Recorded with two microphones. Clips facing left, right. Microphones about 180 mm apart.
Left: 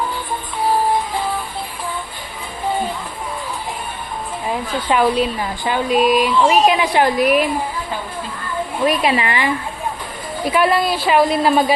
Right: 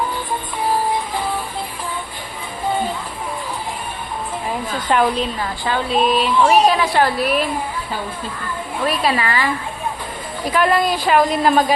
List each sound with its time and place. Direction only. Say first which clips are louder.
4.9 s speech: left 2 dB; 5° left (ahead or behind)
8.9 s speech: even; 20° left (ahead or behind)
10.5 s a woman's voice: even; 5° left (ahead or behind)